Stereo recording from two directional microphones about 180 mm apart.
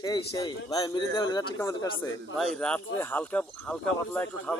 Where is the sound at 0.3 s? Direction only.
20° left (ahead or behind).